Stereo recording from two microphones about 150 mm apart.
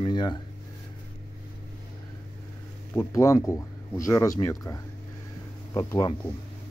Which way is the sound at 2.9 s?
20° left (ahead or behind).